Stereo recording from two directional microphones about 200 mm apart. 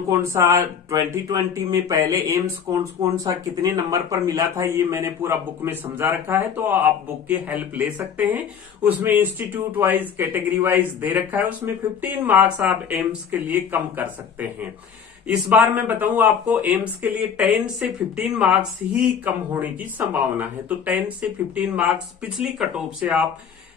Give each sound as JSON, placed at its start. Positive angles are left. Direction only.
{"t": 0.2, "sound": "speech", "side_deg": -15}